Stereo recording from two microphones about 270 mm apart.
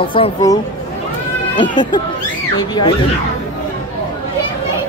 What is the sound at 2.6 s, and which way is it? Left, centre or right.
Speech, centre.